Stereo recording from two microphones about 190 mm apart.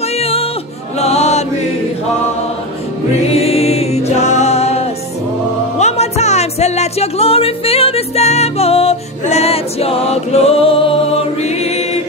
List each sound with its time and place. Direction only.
0.2 s music: 30° left (ahead or behind)
0.9 s chant: 35° left (ahead or behind)
3.3 s music: 30° left (ahead or behind)